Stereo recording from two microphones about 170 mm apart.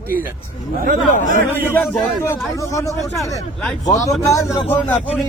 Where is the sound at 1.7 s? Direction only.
15° left (ahead or behind).